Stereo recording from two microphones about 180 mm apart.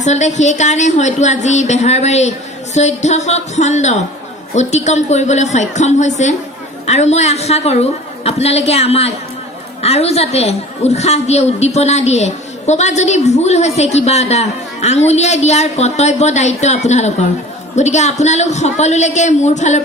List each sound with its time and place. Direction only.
0.0 s a woman's voice: 40° left (ahead or behind)